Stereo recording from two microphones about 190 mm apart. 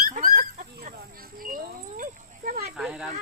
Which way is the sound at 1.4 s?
50° right (ahead or behind).